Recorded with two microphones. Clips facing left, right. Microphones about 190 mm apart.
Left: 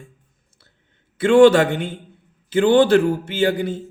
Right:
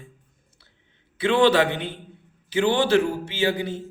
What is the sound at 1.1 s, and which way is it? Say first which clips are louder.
A man's voice: left 7 dB; 50° left (ahead or behind).